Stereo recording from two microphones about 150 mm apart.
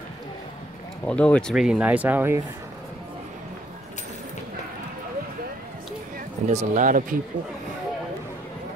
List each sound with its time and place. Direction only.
1.0 s speech: 10° left (ahead or behind)
1.5 s speech: 5° right (ahead or behind)
6.5 s speech: 55° right (ahead or behind)